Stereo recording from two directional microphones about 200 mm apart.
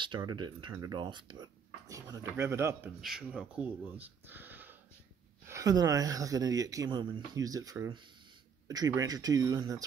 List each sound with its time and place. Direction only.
0.2 s speech: 20° right (ahead or behind)